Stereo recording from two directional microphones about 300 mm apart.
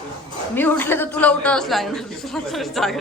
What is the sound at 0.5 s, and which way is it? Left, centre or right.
A man's voice, centre.